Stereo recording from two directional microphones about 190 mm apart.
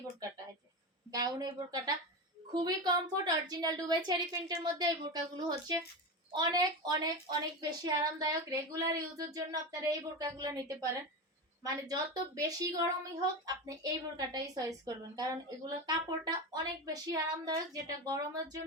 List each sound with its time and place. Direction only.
1.1 s a woman's voice: 20° right (ahead or behind)